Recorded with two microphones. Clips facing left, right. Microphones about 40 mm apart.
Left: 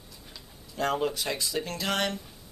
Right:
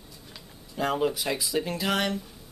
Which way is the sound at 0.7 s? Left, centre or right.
Centre.